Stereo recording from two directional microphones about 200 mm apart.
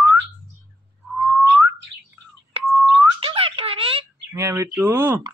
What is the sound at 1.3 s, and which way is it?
Whistling, 10° right (ahead or behind).